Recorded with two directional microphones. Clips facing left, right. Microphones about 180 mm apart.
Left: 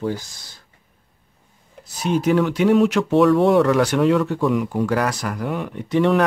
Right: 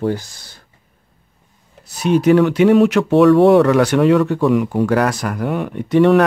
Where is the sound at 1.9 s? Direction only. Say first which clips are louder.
Right 6 dB; 65° right (ahead or behind).